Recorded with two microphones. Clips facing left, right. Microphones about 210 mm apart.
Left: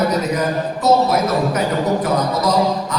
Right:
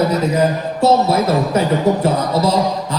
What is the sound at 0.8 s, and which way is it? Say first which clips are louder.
Speech: right 2 dB; 30° right (ahead or behind).